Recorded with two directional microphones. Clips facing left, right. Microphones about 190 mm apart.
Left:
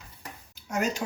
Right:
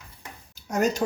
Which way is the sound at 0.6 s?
40° right (ahead or behind).